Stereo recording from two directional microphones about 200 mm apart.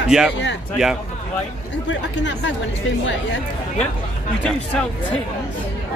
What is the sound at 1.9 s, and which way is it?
Speech, 65° left (ahead or behind).